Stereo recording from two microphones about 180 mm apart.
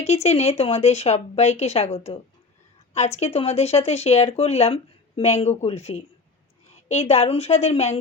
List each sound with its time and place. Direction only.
0.0 s speech: 35° left (ahead or behind)
3.2 s speech: 35° left (ahead or behind)